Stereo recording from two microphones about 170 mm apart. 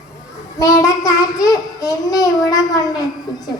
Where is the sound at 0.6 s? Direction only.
20° left (ahead or behind).